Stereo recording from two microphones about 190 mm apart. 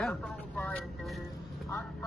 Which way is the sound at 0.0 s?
10° left (ahead or behind).